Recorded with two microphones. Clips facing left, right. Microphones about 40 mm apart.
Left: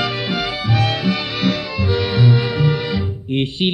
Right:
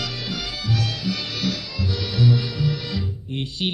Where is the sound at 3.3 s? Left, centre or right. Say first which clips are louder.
Left 8 dB; left.